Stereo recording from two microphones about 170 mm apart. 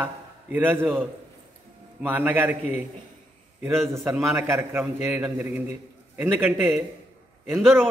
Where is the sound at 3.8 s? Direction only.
15° right (ahead or behind).